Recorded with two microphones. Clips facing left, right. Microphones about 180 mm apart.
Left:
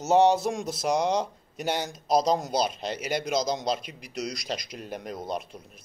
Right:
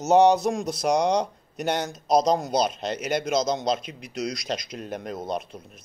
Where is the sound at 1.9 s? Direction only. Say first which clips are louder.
Right 2 dB; 5° left (ahead or behind).